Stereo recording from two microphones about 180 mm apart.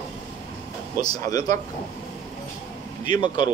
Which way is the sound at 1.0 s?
20° left (ahead or behind).